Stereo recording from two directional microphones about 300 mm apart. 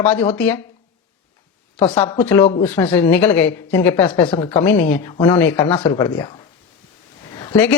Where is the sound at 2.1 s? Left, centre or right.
Centre.